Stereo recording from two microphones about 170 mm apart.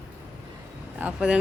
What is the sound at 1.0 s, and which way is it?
Speech, 5° right (ahead or behind).